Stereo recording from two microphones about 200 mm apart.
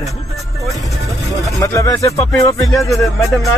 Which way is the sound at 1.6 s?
15° left (ahead or behind).